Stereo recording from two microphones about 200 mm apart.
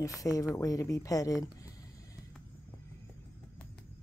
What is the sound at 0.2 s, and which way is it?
Speech, 15° left (ahead or behind).